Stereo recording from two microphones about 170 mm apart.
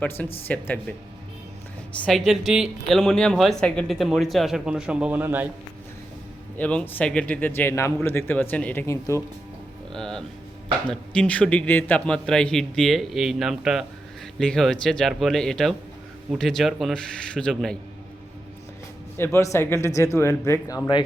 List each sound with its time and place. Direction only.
0.0 s speech: 10° left (ahead or behind)
2.0 s speech: centre (ahead or behind)
6.6 s speech: 5° left (ahead or behind)
9.9 s speech: 5° left (ahead or behind)
19.1 s speech: 15° left (ahead or behind)